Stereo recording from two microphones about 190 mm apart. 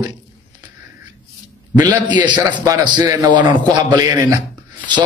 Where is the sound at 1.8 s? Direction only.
20° right (ahead or behind).